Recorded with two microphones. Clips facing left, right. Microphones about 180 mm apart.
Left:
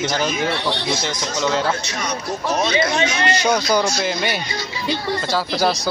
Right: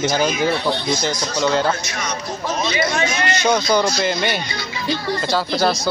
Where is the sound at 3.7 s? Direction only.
5° left (ahead or behind).